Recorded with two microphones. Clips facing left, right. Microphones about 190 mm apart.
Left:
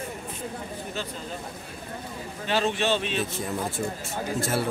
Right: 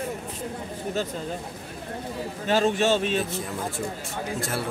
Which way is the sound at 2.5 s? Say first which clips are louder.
Right 3 dB; 45° right (ahead or behind).